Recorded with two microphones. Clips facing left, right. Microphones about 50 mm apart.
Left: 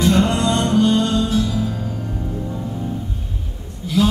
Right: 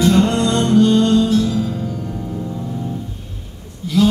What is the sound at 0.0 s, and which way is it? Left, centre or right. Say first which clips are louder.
Music: right 2 dB; centre.